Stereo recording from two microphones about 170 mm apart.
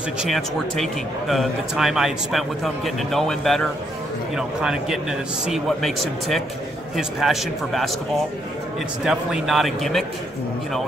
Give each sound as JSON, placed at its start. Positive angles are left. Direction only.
{"t": 0.2, "sound": "a man's voice", "side_deg": 0}
{"t": 9.0, "sound": "a man's voice", "side_deg": 0}